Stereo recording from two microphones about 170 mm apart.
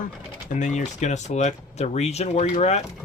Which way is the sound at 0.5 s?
45° left (ahead or behind).